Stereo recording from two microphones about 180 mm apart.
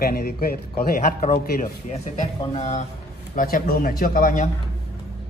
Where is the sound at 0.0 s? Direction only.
60° left (ahead or behind); by 2.8 s 35° left (ahead or behind).